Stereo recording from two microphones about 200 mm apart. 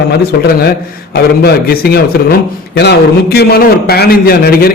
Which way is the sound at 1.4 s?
50° left (ahead or behind).